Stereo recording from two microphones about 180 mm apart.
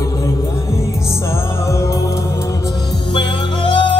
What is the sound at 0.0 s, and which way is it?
Music, 20° left (ahead or behind).